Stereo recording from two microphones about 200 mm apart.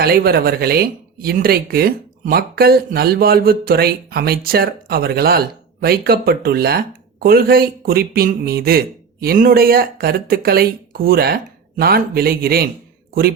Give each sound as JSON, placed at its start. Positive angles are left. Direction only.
{"t": 0.0, "sound": "speech", "side_deg": -50}